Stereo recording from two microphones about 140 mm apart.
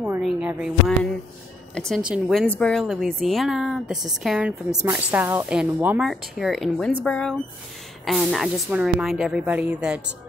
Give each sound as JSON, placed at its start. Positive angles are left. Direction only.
{"t": 0.2, "sound": "speech", "side_deg": -10}
{"t": 2.0, "sound": "a woman's voice", "side_deg": -5}
{"t": 2.5, "sound": "a woman's voice", "side_deg": 5}
{"t": 6.0, "sound": "speech", "side_deg": 0}